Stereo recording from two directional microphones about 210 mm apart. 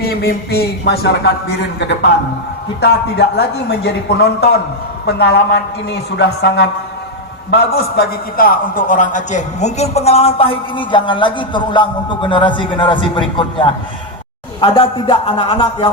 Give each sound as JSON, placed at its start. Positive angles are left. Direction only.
{"t": 0.0, "sound": "a man's voice", "side_deg": 50}
{"t": 5.0, "sound": "a man's voice", "side_deg": 50}